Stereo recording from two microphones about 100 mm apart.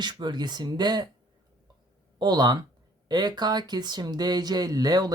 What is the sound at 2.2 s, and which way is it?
Speech, 45° right (ahead or behind).